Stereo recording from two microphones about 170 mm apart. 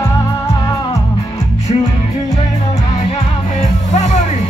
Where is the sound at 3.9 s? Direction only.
45° left (ahead or behind).